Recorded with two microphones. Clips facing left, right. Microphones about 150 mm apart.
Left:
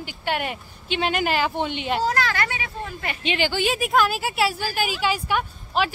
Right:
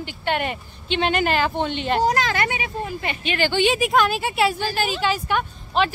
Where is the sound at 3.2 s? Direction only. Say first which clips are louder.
Even; 15° left (ahead or behind).